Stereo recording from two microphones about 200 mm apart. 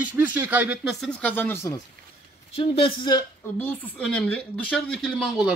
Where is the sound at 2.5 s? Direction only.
30° left (ahead or behind).